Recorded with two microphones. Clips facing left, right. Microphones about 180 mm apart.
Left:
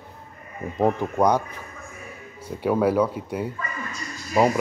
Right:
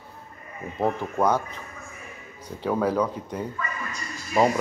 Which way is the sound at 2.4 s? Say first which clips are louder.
Left 4 dB; 10° left (ahead or behind).